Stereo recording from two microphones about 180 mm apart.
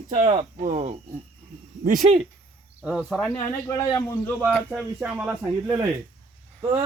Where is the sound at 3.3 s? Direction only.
20° left (ahead or behind).